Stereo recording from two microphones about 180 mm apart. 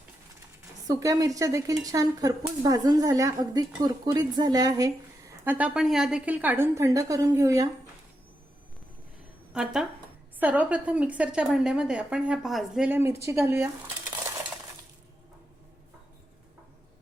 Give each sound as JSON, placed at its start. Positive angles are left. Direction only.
{"t": 0.9, "sound": "speech", "side_deg": -20}
{"t": 5.5, "sound": "a woman's voice", "side_deg": -5}
{"t": 9.5, "sound": "a woman's voice", "side_deg": -5}